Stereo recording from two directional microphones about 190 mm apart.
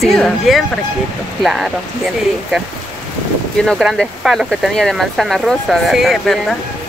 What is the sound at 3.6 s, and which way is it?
Speech, centre (ahead or behind).